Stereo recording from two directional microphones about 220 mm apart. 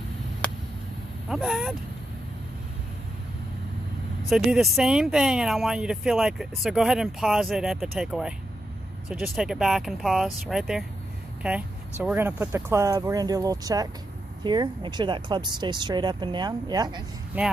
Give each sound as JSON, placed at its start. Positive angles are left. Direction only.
{"t": 0.4, "sound": "a sound", "side_deg": 5}
{"t": 1.3, "sound": "speech", "side_deg": 0}
{"t": 4.3, "sound": "speech", "side_deg": 0}
{"t": 12.0, "sound": "speech", "side_deg": -5}
{"t": 17.3, "sound": "speech", "side_deg": -5}